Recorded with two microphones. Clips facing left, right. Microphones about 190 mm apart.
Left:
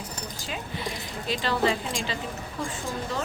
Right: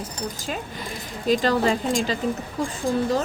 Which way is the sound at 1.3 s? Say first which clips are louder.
Right 6 dB; 45° right (ahead or behind).